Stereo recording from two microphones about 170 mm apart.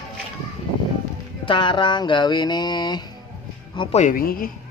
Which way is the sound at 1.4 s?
30° left (ahead or behind).